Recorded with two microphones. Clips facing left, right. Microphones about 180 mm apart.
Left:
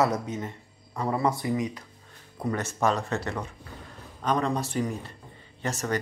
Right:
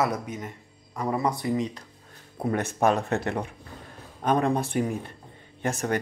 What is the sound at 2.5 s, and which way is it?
Speech, 55° right (ahead or behind).